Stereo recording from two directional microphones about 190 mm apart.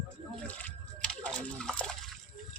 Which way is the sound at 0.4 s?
10° left (ahead or behind).